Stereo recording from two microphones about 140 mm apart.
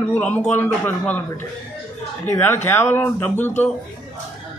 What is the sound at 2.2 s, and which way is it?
A man's voice, 20° left (ahead or behind).